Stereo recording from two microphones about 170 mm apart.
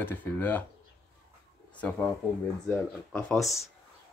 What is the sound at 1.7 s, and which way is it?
Speech, 10° left (ahead or behind).